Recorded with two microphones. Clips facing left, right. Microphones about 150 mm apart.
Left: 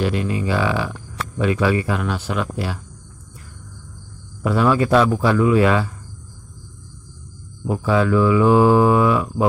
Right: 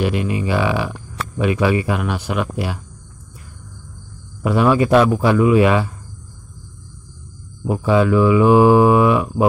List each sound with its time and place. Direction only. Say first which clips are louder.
0.0 s speech: right 1 dB; 15° right (ahead or behind)
4.4 s speech: right 2 dB; 15° right (ahead or behind)
7.6 s speech: right 3 dB; 15° right (ahead or behind)